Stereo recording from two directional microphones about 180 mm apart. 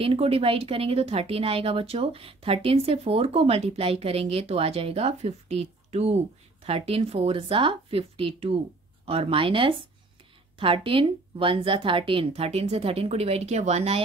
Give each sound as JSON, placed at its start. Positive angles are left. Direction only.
{"t": 0.0, "sound": "speech", "side_deg": -30}